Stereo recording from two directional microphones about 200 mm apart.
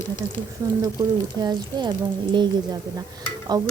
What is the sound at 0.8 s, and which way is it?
A woman's voice, 20° right (ahead or behind).